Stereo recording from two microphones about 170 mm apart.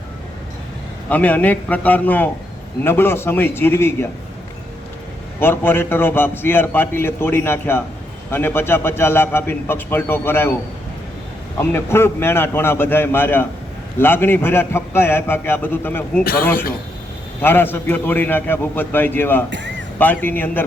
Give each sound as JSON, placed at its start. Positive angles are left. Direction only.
{"t": 1.1, "sound": "a man's voice", "side_deg": 10}
{"t": 5.4, "sound": "a man's voice", "side_deg": 15}
{"t": 11.6, "sound": "a man's voice", "side_deg": 15}
{"t": 16.2, "sound": "a man's voice", "side_deg": 60}
{"t": 17.4, "sound": "a man's voice", "side_deg": 10}
{"t": 19.5, "sound": "speech", "side_deg": -90}
{"t": 20.0, "sound": "a man's voice", "side_deg": 10}